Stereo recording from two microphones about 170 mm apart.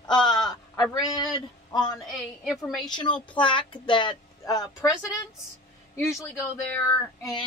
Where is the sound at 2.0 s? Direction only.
Centre (ahead or behind).